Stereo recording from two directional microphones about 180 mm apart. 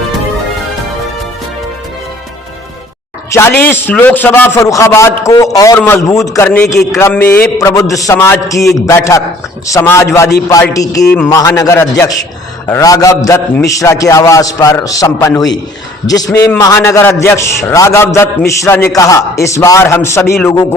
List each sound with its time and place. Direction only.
3.3 s a man's voice: 10° left (ahead or behind)